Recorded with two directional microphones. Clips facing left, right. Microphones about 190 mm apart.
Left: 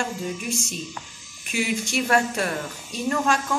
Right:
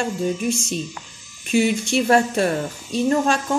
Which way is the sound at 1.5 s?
30° right (ahead or behind).